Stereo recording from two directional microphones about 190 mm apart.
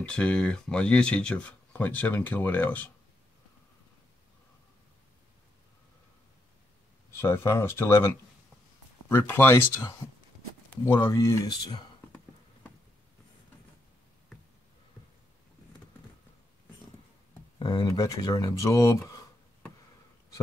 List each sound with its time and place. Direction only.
0.0 s speech: 5° left (ahead or behind)
7.2 s speech: 15° left (ahead or behind)
10.9 s speech: 15° left (ahead or behind)
17.6 s speech: 20° left (ahead or behind)